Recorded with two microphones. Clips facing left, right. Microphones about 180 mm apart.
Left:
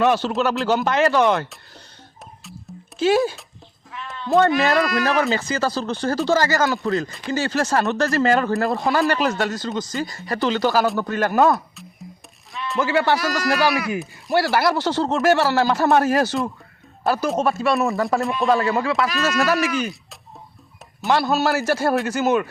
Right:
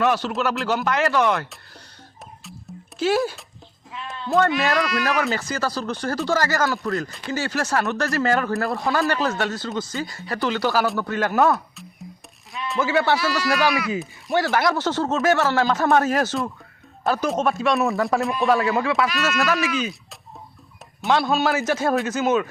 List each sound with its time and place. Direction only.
0.0 s speech: 25° left (ahead or behind)
3.0 s speech: 20° left (ahead or behind)
5.3 s speech: 25° left (ahead or behind)
12.8 s speech: 10° left (ahead or behind)
13.1 s speech: 45° left (ahead or behind)
13.6 s a man's voice: 10° left (ahead or behind)
19.0 s speech: 40° left (ahead or behind)
21.0 s speech: 5° left (ahead or behind)